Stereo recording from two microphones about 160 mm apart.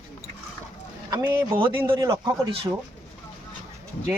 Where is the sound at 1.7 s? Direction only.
15° right (ahead or behind).